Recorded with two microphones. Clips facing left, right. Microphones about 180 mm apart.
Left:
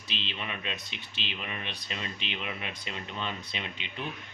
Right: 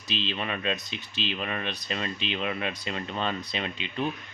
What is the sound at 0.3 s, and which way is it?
Speech, 60° right (ahead or behind).